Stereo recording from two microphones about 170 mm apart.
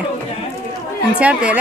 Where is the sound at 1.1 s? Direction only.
5° right (ahead or behind).